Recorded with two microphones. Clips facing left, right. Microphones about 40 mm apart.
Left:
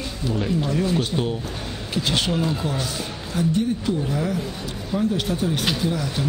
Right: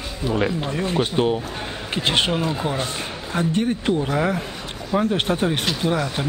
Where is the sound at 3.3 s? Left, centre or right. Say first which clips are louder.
Right 1 dB; right.